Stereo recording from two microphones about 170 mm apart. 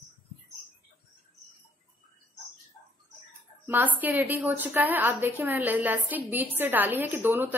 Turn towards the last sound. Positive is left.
turn(degrees=-10)  # may be behind; listen again after turning